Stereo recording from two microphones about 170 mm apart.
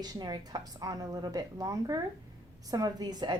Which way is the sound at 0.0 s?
25° right (ahead or behind).